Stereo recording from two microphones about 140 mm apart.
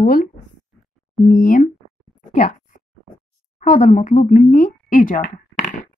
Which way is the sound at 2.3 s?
70° left (ahead or behind).